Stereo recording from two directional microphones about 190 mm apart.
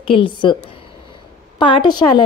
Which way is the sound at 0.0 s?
25° left (ahead or behind).